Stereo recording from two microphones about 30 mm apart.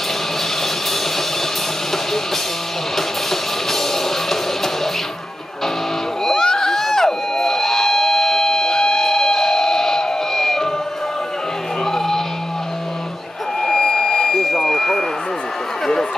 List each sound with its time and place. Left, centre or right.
3.0 s music: centre
6.2 s music: centre
11.8 s music: centre
13.6 s a sound: centre